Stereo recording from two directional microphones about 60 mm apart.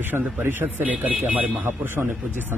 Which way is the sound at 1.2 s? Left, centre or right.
Centre.